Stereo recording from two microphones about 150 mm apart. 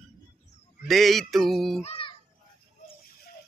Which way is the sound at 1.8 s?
40° left (ahead or behind).